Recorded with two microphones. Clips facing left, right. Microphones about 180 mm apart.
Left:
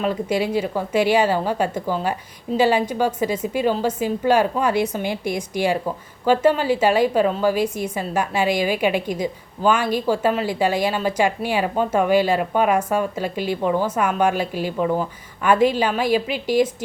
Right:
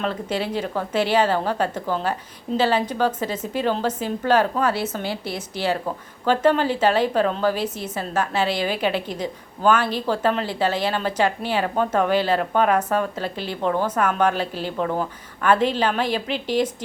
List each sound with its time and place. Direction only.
0.0 s a woman's voice: 10° left (ahead or behind)